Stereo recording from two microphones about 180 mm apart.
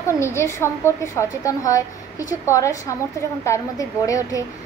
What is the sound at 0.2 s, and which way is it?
A woman's voice, 15° left (ahead or behind).